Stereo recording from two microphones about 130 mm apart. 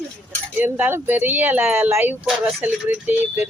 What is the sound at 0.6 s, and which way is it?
Speech, 15° right (ahead or behind).